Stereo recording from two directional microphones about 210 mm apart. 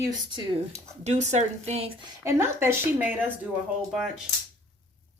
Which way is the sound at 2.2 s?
10° right (ahead or behind).